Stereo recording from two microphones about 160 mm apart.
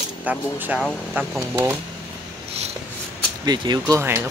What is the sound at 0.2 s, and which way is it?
Speech, 10° right (ahead or behind).